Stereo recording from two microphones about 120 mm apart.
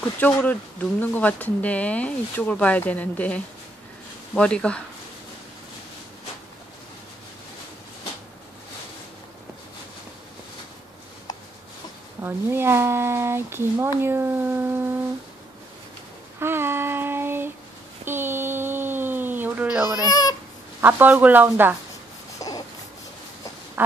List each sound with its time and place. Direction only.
0.0 s speech: 15° left (ahead or behind)
12.2 s speech: 20° right (ahead or behind)
16.3 s child singing: 20° right (ahead or behind)
18.0 s a sound: 20° right (ahead or behind)
19.9 s speech: 35° left (ahead or behind)
20.8 s speech: 15° right (ahead or behind)
22.4 s a sound: 30° left (ahead or behind)